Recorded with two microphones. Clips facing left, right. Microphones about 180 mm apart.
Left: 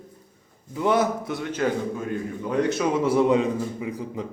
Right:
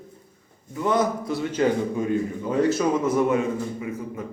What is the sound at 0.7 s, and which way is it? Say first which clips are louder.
Speech: left 1 dB; 10° left (ahead or behind).